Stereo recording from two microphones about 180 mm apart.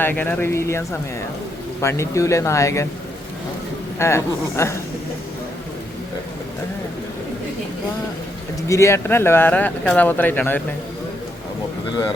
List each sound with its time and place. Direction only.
0.0 s speech: 10° left (ahead or behind)
3.9 s speech: 15° left (ahead or behind)
8.6 s speech: 15° left (ahead or behind)